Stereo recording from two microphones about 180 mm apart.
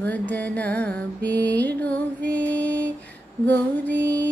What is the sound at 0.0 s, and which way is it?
Music, 10° left (ahead or behind).